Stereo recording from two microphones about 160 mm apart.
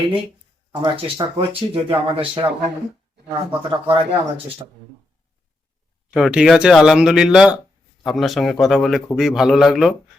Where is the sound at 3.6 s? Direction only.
30° right (ahead or behind).